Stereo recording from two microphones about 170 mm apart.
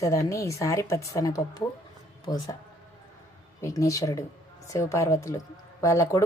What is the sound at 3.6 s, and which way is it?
A woman's voice, 20° left (ahead or behind).